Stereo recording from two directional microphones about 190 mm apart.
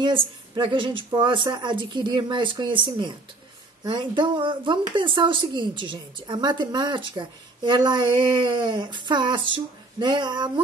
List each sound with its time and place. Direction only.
0.6 s speech: 25° right (ahead or behind)